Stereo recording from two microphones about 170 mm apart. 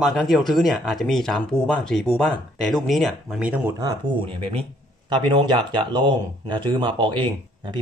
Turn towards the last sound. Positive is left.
turn(degrees=-30)  # may be behind; listen again after turning